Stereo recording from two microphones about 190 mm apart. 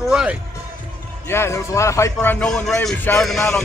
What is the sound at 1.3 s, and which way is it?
A man's voice, 15° left (ahead or behind).